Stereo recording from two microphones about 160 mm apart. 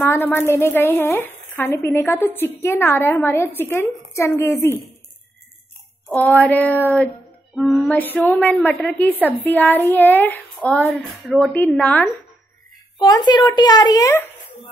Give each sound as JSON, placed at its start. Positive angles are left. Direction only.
{"t": 0.0, "sound": "a woman's voice", "side_deg": 15}
{"t": 6.1, "sound": "a woman's voice", "side_deg": 10}
{"t": 7.5, "sound": "music", "side_deg": 0}
{"t": 8.0, "sound": "a woman's voice", "side_deg": 10}
{"t": 11.5, "sound": "a woman's voice", "side_deg": 10}
{"t": 13.0, "sound": "a woman's voice", "side_deg": 25}